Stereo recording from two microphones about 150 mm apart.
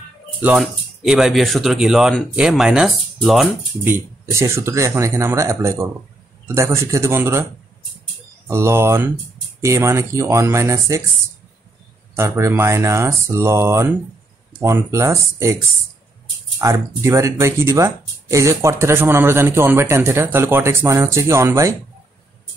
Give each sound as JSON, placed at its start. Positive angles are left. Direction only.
{"t": 0.4, "sound": "speech", "side_deg": -5}
{"t": 4.3, "sound": "speech", "side_deg": -20}
{"t": 8.5, "sound": "speech", "side_deg": -15}
{"t": 12.2, "sound": "speech", "side_deg": -15}
{"t": 16.5, "sound": "speech", "side_deg": -20}